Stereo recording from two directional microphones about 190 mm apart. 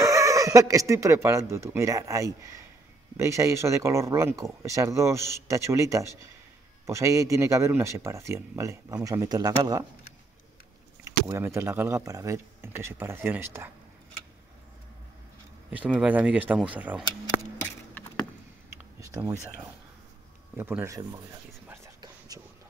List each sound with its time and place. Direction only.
0.0 s speech: 15° right (ahead or behind)
11.1 s speech: 15° right (ahead or behind)
15.7 s speech: 5° right (ahead or behind)
18.7 s a sound: 15° right (ahead or behind)
20.5 s speech: 10° right (ahead or behind)